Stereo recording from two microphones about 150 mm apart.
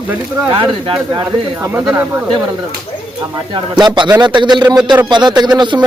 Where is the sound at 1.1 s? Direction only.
20° right (ahead or behind).